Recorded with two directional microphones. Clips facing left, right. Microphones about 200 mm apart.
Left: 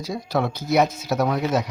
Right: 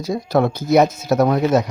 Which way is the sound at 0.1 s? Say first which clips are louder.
Right 7 dB; 50° right (ahead or behind).